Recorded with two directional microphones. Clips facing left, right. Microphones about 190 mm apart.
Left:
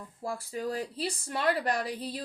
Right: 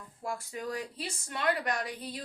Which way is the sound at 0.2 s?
30° left (ahead or behind).